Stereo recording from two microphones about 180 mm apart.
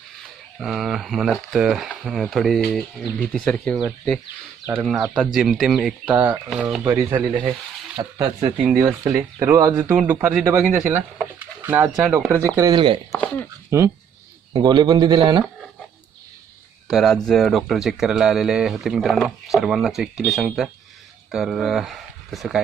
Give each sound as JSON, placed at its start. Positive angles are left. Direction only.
{"t": 0.6, "sound": "speech", "side_deg": 0}
{"t": 4.6, "sound": "speech", "side_deg": -10}
{"t": 6.8, "sound": "speech", "side_deg": -15}
{"t": 8.2, "sound": "speech", "side_deg": -25}
{"t": 8.7, "sound": "speech", "side_deg": -10}
{"t": 12.5, "sound": "speech", "side_deg": -20}
{"t": 13.1, "sound": "speech", "side_deg": 5}
{"t": 13.7, "sound": "speech", "side_deg": -15}
{"t": 16.9, "sound": "speech", "side_deg": 0}